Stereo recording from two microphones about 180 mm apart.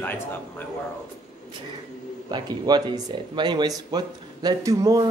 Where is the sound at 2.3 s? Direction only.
25° right (ahead or behind).